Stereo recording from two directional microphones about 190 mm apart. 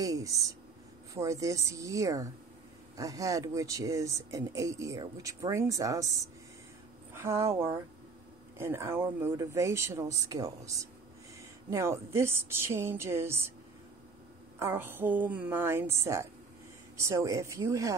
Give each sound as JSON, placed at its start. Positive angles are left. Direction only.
{"t": 0.0, "sound": "speech", "side_deg": -20}
{"t": 7.2, "sound": "speech", "side_deg": -15}
{"t": 14.6, "sound": "speech", "side_deg": -10}